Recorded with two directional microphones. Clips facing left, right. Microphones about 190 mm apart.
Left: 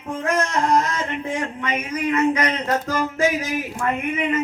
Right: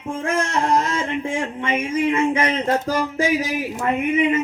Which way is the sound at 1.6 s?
25° right (ahead or behind).